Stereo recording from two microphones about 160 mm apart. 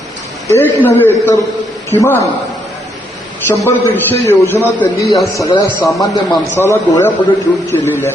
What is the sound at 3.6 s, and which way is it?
A man's voice, 15° left (ahead or behind).